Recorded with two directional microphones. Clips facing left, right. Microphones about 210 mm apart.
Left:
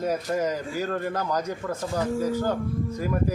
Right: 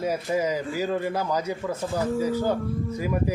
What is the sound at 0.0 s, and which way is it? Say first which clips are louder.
A man's voice: even; 10° right (ahead or behind).